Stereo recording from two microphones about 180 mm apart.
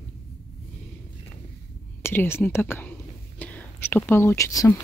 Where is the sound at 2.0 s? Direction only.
15° left (ahead or behind).